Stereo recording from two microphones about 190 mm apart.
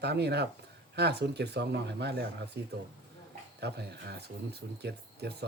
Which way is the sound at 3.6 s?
60° right (ahead or behind).